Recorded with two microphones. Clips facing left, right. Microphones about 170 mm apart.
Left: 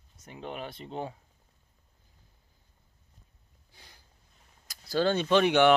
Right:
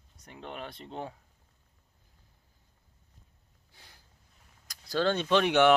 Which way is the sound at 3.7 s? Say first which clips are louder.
Left 1 dB; centre (ahead or behind).